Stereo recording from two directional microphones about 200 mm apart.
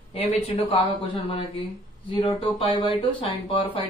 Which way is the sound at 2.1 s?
25° left (ahead or behind).